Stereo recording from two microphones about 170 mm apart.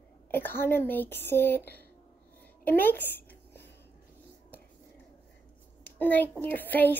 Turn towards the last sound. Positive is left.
turn(degrees=10)  # may be behind; listen again after turning